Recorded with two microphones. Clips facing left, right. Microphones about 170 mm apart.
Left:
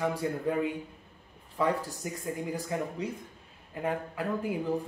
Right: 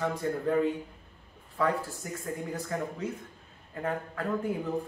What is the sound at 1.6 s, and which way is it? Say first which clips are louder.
A man's voice: even; 20° left (ahead or behind).